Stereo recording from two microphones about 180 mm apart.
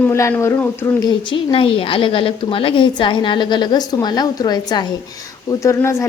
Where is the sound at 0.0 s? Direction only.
15° left (ahead or behind).